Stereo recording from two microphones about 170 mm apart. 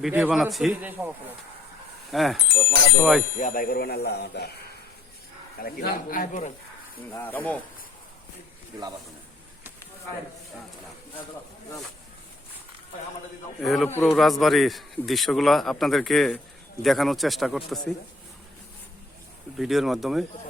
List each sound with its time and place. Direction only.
0.0 s a man's voice: 5° right (ahead or behind)
2.6 s speech: 15° left (ahead or behind)
3.0 s a man's voice: centre (ahead or behind)
3.3 s speech: 55° left (ahead or behind); by 4.4 s 75° left (ahead or behind)
5.5 s speech: 60° left (ahead or behind)
7.1 s speech: 10° left (ahead or behind)
13.6 s a man's voice: centre (ahead or behind)
19.5 s a man's voice: centre (ahead or behind)